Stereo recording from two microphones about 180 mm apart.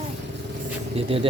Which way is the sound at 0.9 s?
30° right (ahead or behind).